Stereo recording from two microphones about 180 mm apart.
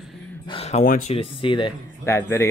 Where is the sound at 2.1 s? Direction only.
15° left (ahead or behind).